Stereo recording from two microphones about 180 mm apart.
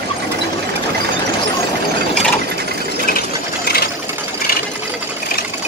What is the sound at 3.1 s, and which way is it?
Engine, 55° left (ahead or behind).